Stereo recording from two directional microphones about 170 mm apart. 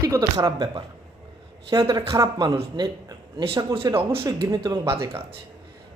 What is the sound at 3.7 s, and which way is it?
Speech, 20° right (ahead or behind).